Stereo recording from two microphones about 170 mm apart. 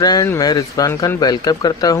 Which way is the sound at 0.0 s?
20° left (ahead or behind).